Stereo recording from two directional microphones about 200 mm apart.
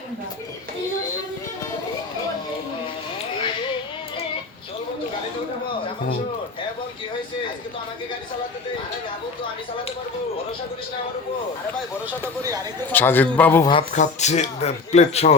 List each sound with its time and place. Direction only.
12.9 s a man's voice: 10° left (ahead or behind)
13.9 s a man's voice: 35° left (ahead or behind)